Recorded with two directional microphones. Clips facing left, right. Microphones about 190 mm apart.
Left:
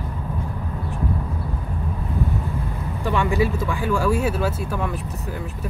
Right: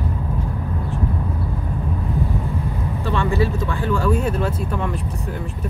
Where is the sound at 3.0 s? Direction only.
15° left (ahead or behind).